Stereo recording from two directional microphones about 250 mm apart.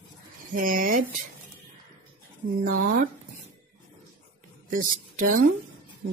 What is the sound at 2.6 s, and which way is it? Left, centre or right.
Speech, right.